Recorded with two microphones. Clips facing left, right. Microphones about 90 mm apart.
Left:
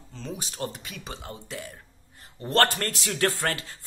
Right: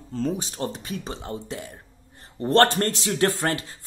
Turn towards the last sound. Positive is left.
turn(degrees=-25)  # may be behind; listen again after turning